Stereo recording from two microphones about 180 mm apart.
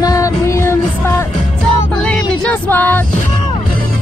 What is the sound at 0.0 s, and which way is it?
Music, 20° left (ahead or behind).